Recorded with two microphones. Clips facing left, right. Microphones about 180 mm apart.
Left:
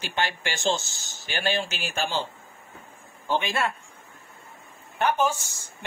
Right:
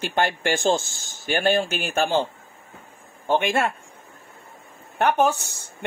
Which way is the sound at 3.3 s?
50° right (ahead or behind).